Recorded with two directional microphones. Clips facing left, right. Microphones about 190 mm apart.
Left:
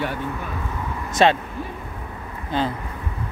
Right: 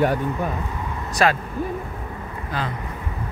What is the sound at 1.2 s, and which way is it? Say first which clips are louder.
Speech: left 3 dB; 25° left (ahead or behind).